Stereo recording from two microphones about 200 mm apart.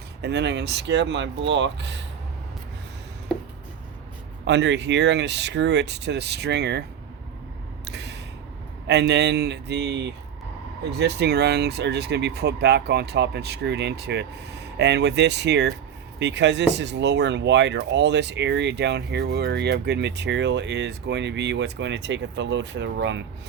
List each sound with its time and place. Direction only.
0.2 s speech: 60° right (ahead or behind)
4.4 s speech: 60° right (ahead or behind)
7.9 s a sound: 55° right (ahead or behind)
8.9 s speech: 55° right (ahead or behind)